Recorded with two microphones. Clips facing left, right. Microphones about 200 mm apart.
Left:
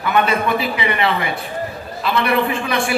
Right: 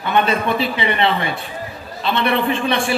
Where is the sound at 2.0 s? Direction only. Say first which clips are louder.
Even; 30° right (ahead or behind).